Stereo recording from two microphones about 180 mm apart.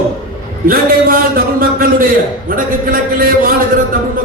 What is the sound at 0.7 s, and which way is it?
A man's voice, 55° right (ahead or behind).